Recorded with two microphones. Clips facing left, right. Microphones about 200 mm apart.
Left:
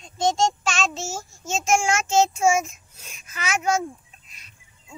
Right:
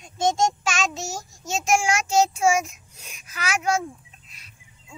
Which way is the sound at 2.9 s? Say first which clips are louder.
Even; 10° right (ahead or behind).